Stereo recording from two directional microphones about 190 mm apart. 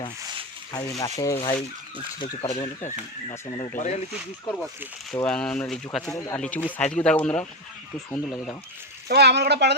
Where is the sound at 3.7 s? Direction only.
40° left (ahead or behind).